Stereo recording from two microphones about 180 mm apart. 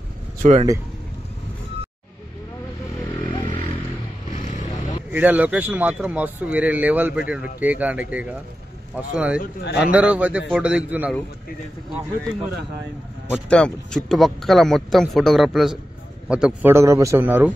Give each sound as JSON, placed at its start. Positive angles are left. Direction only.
{"t": 0.4, "sound": "speech", "side_deg": -40}
{"t": 3.3, "sound": "a sound", "side_deg": 35}
{"t": 4.5, "sound": "vehicle", "side_deg": 35}
{"t": 5.1, "sound": "speech", "side_deg": -10}
{"t": 9.4, "sound": "a man's voice", "side_deg": 65}
{"t": 9.8, "sound": "speech", "side_deg": -10}
{"t": 13.3, "sound": "speech", "side_deg": 5}
{"t": 16.7, "sound": "speech", "side_deg": -15}